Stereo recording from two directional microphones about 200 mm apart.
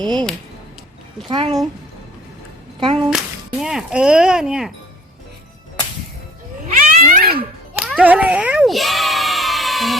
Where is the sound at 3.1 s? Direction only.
Centre (ahead or behind).